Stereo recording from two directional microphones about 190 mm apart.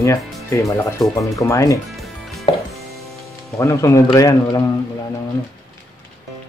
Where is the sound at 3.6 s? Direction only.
15° left (ahead or behind).